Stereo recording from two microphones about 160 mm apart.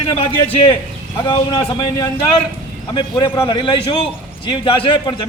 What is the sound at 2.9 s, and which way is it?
A man's voice, 30° left (ahead or behind).